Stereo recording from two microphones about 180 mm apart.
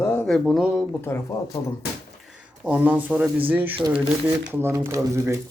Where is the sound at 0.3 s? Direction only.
Centre (ahead or behind).